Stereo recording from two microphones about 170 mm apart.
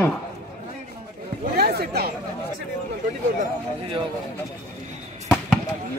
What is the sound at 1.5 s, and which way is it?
Chatter, 65° right (ahead or behind).